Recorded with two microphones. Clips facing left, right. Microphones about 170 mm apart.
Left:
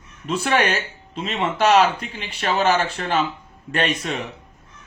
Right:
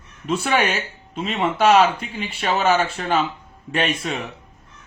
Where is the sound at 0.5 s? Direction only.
40° left (ahead or behind).